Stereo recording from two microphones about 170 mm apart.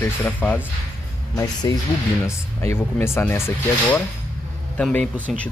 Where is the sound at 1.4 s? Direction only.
20° left (ahead or behind).